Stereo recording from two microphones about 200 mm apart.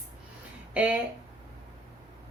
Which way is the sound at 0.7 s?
5° right (ahead or behind).